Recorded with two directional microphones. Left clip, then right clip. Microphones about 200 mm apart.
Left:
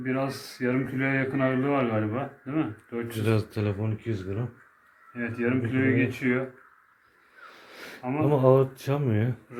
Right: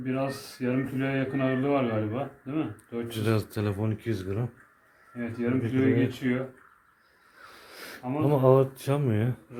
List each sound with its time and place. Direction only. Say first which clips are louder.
0.0 s speech: left 1 dB; 15° right (ahead or behind)
3.2 s speech: left 1 dB; centre (ahead or behind)
3.8 s speech: right 1 dB; 15° right (ahead or behind)
7.4 s a sound: even; centre (ahead or behind)
8.2 s speech: left 1 dB; centre (ahead or behind)